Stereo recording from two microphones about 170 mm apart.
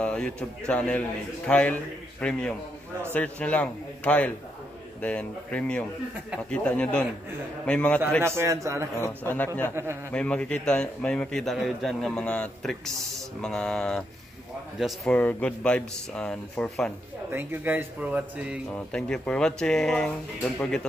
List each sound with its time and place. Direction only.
0.0 s a man's voice: 5° left (ahead or behind)
8.2 s speech: 15° right (ahead or behind)
9.2 s a man's voice: 10° left (ahead or behind)
17.3 s speech: 10° right (ahead or behind)
18.7 s a man's voice: 5° left (ahead or behind)